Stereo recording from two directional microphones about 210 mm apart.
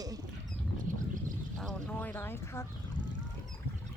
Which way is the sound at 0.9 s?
40° right (ahead or behind).